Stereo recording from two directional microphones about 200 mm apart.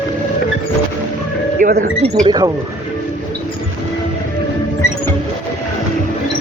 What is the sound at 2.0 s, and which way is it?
Speech, 30° right (ahead or behind).